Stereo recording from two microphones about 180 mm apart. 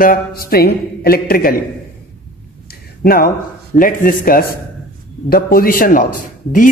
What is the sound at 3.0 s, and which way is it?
A man's voice, 55° left (ahead or behind).